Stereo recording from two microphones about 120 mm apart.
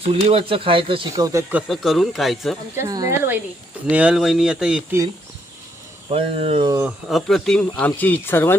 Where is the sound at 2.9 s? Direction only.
30° right (ahead or behind).